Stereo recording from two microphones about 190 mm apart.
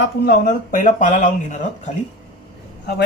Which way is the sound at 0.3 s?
45° left (ahead or behind).